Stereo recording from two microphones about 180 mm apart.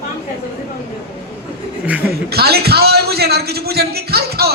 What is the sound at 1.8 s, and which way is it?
Speech, 10° right (ahead or behind).